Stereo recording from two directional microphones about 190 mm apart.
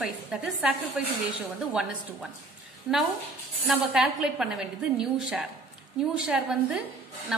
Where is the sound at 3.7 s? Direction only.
Centre (ahead or behind).